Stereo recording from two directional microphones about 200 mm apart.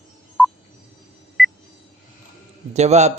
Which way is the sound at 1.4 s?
Centre (ahead or behind).